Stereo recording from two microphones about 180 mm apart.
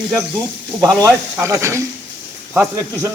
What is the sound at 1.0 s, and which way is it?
Speech, 15° right (ahead or behind).